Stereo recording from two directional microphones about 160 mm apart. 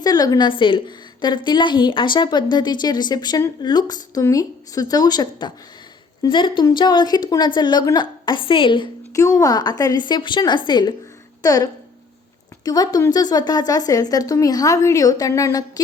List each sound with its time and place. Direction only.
0.0 s a woman's voice: 25° left (ahead or behind)
9.1 s a woman's voice: 20° left (ahead or behind)